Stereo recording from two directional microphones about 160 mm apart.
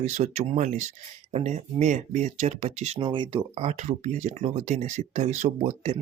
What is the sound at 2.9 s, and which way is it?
Speech, 30° right (ahead or behind).